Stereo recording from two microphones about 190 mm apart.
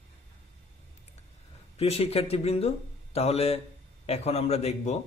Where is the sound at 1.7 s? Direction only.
30° left (ahead or behind).